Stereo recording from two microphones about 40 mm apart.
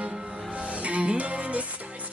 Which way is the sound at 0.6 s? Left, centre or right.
Right.